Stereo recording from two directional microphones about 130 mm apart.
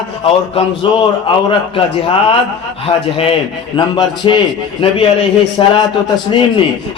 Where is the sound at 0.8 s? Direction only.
40° left (ahead or behind).